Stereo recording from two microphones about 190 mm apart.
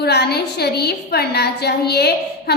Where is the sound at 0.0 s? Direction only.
60° left (ahead or behind).